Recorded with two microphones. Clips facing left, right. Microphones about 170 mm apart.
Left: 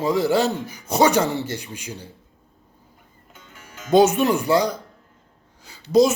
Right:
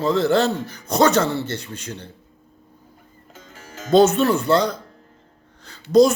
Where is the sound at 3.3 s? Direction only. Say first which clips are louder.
Right 4 dB; 40° right (ahead or behind).